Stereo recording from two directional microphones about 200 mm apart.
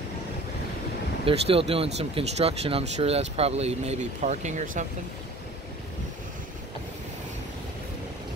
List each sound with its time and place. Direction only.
1.2 s speech: 25° right (ahead or behind)